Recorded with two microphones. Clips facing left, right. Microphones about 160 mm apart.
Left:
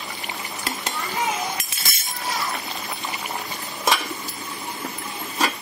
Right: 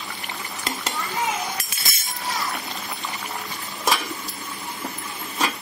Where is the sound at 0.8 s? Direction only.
20° left (ahead or behind).